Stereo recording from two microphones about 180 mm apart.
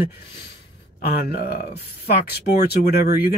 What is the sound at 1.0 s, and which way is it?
Speech, 60° left (ahead or behind).